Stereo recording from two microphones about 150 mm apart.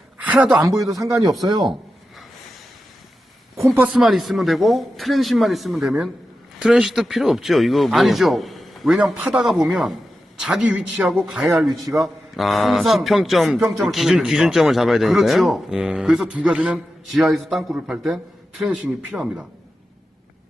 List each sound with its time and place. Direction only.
0.2 s a sound: 10° right (ahead or behind)
0.5 s speech: 20° right (ahead or behind)
3.8 s speech: 5° right (ahead or behind)